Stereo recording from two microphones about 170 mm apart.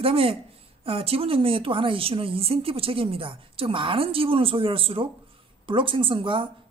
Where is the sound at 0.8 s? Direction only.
35° right (ahead or behind).